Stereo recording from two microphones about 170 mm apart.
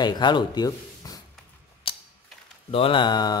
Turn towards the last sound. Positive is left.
turn(degrees=25)  # may be behind; listen again after turning